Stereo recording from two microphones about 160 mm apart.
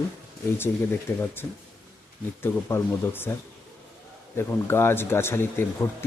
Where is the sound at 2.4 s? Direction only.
15° left (ahead or behind).